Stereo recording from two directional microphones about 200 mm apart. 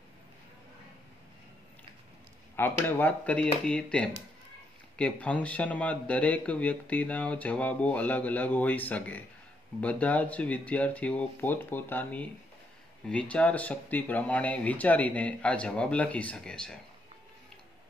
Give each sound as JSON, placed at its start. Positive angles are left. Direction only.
{"t": 2.5, "sound": "speech", "side_deg": 10}